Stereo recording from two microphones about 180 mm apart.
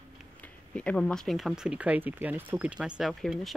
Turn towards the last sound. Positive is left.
turn(degrees=0)  # may be behind; listen again after turning